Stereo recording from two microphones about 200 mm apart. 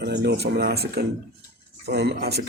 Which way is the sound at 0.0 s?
55° right (ahead or behind).